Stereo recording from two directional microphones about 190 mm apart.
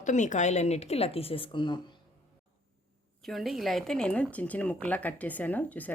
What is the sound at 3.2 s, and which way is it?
Speech, centre (ahead or behind).